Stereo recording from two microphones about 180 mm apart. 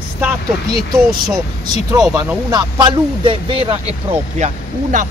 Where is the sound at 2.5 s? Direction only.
25° right (ahead or behind); by 5.1 s 45° right (ahead or behind).